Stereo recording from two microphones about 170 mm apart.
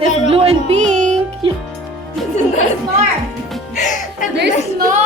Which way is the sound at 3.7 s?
45° left (ahead or behind).